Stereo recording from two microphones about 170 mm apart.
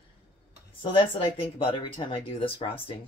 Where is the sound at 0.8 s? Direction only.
30° left (ahead or behind).